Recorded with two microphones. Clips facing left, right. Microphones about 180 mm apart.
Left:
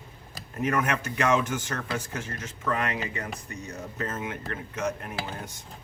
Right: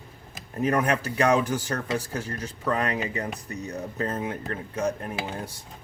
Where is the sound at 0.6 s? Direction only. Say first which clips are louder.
Right 3 dB; 35° right (ahead or behind).